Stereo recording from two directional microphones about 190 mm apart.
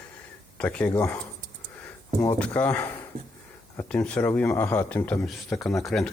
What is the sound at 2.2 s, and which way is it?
Speech, 10° left (ahead or behind).